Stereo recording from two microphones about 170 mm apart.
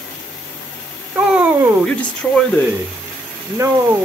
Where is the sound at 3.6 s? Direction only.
20° right (ahead or behind).